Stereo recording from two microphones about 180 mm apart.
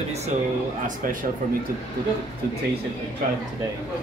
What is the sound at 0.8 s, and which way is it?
Speech, 50° right (ahead or behind).